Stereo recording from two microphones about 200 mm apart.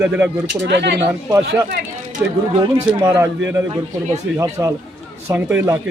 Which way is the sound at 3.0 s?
15° right (ahead or behind).